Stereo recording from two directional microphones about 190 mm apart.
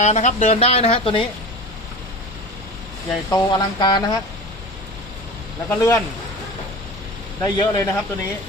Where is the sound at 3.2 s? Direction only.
20° left (ahead or behind).